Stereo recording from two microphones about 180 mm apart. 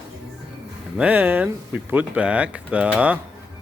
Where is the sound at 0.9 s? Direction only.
10° right (ahead or behind).